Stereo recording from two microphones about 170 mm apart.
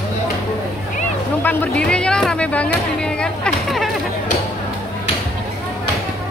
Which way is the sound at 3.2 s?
5° left (ahead or behind).